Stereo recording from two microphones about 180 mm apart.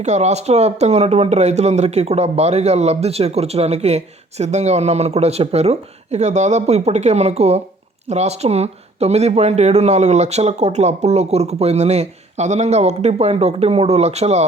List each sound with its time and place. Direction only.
0.0 s speech: 40° right (ahead or behind)